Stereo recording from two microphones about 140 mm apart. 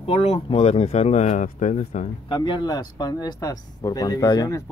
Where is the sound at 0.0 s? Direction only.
45° left (ahead or behind).